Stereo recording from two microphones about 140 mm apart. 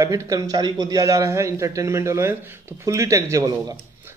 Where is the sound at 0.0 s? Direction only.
25° right (ahead or behind).